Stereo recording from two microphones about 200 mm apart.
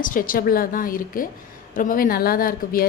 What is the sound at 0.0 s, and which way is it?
Speech, 45° left (ahead or behind).